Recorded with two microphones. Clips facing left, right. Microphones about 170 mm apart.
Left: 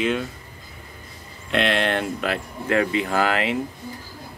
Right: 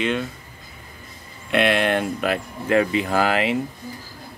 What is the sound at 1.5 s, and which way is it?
Speech, 10° right (ahead or behind).